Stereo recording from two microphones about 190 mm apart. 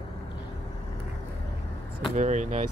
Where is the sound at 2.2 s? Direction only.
40° right (ahead or behind).